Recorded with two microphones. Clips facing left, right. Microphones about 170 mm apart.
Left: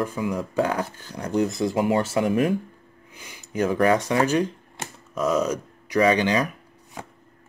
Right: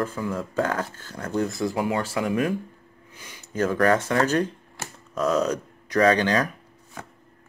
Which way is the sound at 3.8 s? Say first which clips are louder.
Left 1 dB; 15° left (ahead or behind).